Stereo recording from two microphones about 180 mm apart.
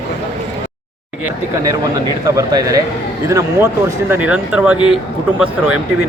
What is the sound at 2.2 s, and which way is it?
A man's voice, 20° right (ahead or behind).